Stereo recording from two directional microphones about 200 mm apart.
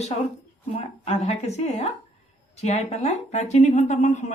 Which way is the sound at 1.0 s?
35° left (ahead or behind).